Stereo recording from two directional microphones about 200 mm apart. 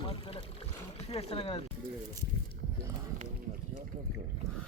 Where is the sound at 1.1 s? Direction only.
30° left (ahead or behind).